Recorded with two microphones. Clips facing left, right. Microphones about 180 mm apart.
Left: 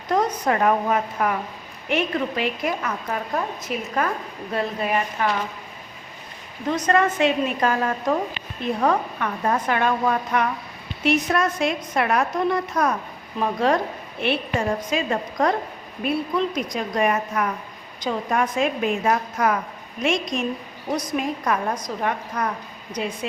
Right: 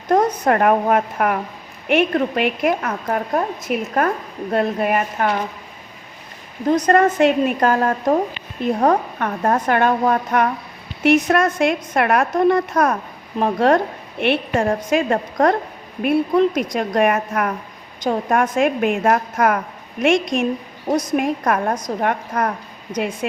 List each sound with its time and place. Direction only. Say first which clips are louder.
0.1 s a woman's voice: right 5 dB; 50° right (ahead or behind)
6.7 s a woman's voice: right 5 dB; 40° right (ahead or behind)